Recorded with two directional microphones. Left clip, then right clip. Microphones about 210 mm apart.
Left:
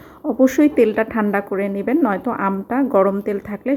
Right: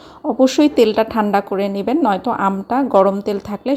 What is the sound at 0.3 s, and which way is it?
A woman's voice, 10° right (ahead or behind).